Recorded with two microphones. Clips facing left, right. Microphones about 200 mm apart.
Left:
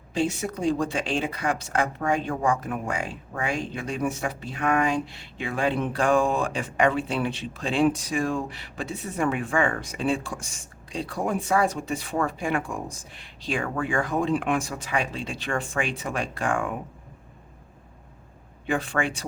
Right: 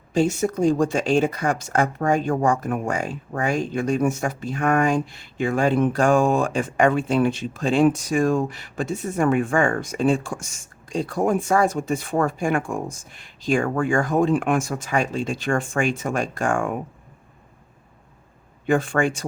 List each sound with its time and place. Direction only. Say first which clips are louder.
0.1 s speech: right 6 dB; 45° right (ahead or behind)
18.6 s speech: right 6 dB; 45° right (ahead or behind)